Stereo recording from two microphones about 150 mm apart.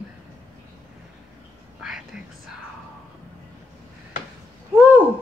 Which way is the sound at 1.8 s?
5° right (ahead or behind).